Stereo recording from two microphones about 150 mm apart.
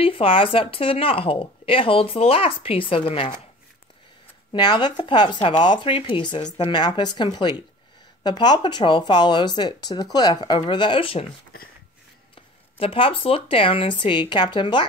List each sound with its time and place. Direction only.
0.0 s a woman's voice: 40° left (ahead or behind)
4.5 s a woman's voice: 30° left (ahead or behind)
12.7 s a woman's voice: 35° left (ahead or behind)